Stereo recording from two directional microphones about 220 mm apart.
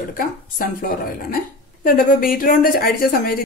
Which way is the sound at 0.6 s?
40° left (ahead or behind).